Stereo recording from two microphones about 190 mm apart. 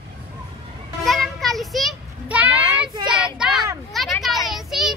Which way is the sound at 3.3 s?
Centre (ahead or behind).